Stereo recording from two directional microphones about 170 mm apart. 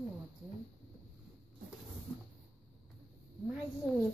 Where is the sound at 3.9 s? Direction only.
Centre (ahead or behind).